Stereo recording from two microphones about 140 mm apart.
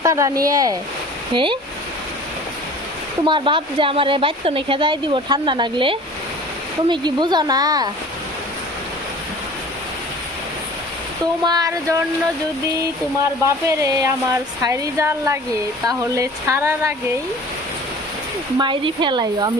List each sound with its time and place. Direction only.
0.0 s speech: 25° right (ahead or behind)
1.3 s a woman's voice: 35° right (ahead or behind)
3.2 s a woman's voice: 35° right (ahead or behind)
11.4 s speech: 25° right (ahead or behind)
13.4 s speech: 20° right (ahead or behind)
18.6 s a woman's voice: 35° right (ahead or behind)